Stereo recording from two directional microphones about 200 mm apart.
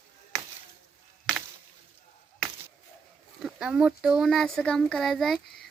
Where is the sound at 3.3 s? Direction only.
5° right (ahead or behind).